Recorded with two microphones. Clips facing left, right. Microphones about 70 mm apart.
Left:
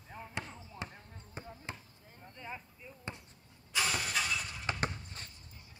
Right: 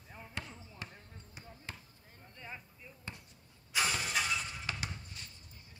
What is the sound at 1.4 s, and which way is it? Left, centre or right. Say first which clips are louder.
Basketball bounce: left 7 dB; left.